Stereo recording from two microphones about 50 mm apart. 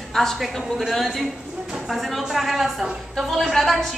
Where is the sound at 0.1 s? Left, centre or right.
Centre.